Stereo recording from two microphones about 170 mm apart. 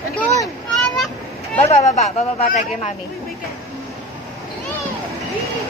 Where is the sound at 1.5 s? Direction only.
40° left (ahead or behind).